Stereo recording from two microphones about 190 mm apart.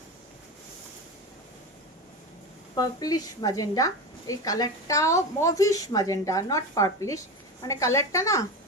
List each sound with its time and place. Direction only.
2.7 s a woman's voice: 20° left (ahead or behind)